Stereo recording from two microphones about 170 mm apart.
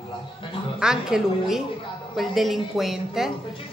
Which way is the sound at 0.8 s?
5° right (ahead or behind).